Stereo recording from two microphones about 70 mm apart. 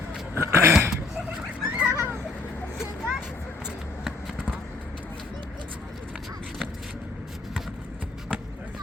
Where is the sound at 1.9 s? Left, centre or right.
Right.